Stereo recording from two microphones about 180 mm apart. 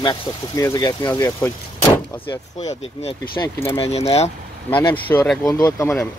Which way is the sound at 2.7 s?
35° left (ahead or behind).